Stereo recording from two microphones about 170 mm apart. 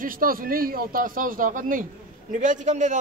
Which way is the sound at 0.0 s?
55° right (ahead or behind).